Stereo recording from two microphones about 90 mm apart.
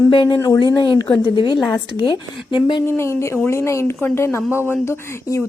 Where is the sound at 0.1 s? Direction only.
60° left (ahead or behind).